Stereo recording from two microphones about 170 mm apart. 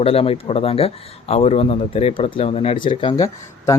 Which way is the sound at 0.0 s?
35° left (ahead or behind).